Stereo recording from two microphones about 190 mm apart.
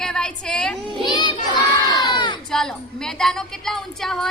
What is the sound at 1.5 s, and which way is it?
Crowd, 20° left (ahead or behind).